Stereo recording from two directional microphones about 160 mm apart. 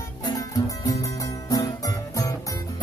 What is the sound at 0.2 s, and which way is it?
Music, 20° left (ahead or behind).